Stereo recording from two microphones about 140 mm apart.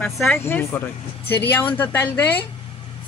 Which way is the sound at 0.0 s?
10° left (ahead or behind).